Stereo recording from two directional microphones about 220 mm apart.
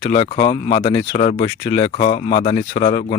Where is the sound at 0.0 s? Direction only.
25° left (ahead or behind).